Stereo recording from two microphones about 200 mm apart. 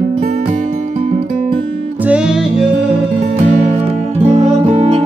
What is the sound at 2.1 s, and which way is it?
Music, 5° right (ahead or behind).